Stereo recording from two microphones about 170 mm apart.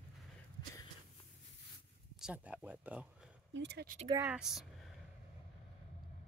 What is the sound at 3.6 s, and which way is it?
Speech, 80° right.